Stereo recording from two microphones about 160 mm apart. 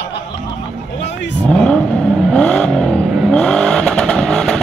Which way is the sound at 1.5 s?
5° left (ahead or behind).